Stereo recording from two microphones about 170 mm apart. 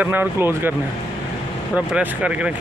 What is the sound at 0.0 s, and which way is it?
Speech, 10° right (ahead or behind).